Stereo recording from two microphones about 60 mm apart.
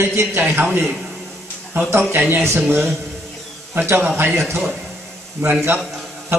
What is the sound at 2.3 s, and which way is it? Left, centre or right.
A man's voice, right.